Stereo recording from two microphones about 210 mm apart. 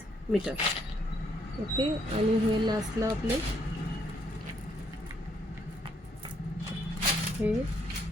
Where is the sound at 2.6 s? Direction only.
20° right (ahead or behind).